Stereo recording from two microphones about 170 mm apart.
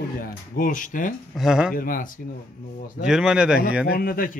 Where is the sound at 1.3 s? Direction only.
5° right (ahead or behind).